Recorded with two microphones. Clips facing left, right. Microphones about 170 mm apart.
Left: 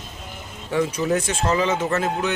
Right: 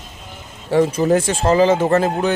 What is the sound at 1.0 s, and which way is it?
Speech, 45° right (ahead or behind).